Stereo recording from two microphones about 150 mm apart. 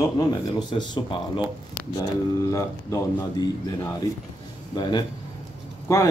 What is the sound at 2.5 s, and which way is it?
Speech, 20° left (ahead or behind).